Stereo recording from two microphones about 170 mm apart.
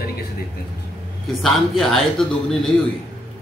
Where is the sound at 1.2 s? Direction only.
Centre (ahead or behind).